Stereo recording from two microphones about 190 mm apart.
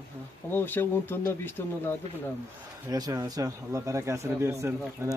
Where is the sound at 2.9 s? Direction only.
20° right (ahead or behind).